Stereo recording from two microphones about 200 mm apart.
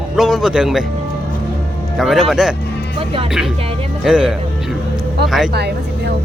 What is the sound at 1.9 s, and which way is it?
Speech, centre (ahead or behind).